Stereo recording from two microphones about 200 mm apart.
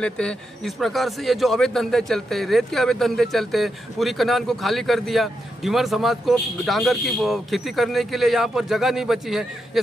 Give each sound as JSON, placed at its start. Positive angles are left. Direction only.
{"t": 0.0, "sound": "a man's voice", "side_deg": 5}